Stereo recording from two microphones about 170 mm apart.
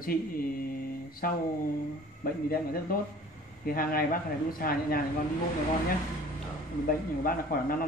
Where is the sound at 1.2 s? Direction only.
60° left (ahead or behind).